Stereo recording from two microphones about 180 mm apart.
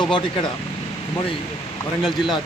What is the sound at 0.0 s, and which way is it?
Speech, 25° left (ahead or behind).